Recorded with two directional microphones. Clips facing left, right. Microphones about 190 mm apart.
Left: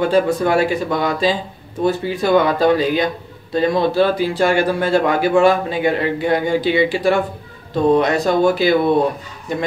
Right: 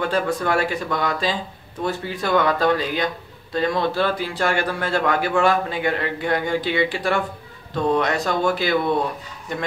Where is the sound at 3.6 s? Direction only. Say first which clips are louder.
Left 6 dB; 30° left (ahead or behind).